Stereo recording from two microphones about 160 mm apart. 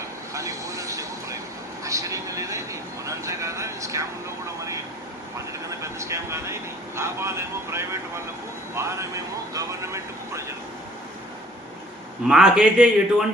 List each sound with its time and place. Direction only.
0.3 s vehicle: 20° right (ahead or behind)
5.8 s speech: 20° right (ahead or behind)
12.3 s speech: 5° right (ahead or behind)